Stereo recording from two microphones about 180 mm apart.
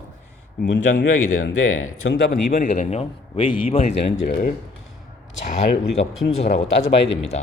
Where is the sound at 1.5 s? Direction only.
90° left.